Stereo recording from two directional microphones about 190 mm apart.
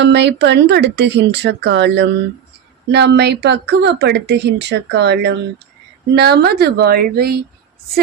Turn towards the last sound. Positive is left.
turn(degrees=-55)  # may be behind; listen again after turning